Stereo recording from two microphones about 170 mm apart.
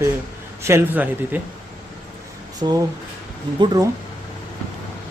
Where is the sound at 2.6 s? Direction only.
30° right (ahead or behind).